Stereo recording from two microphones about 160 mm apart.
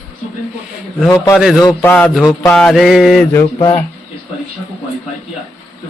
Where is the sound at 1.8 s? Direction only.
10° left (ahead or behind).